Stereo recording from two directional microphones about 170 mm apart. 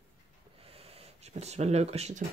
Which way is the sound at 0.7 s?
35° right (ahead or behind).